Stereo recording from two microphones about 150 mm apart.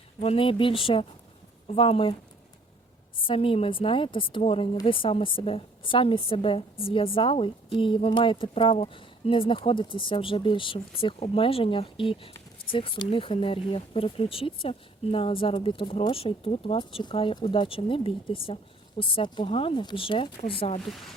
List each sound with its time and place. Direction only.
0.2 s speech: 40° left (ahead or behind)
3.2 s speech: 35° left (ahead or behind)